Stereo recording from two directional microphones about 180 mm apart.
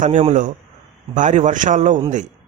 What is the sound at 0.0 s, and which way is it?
A man's voice, 40° right (ahead or behind).